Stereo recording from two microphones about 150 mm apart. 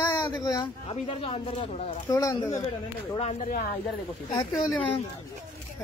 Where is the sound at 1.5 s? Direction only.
50° left (ahead or behind).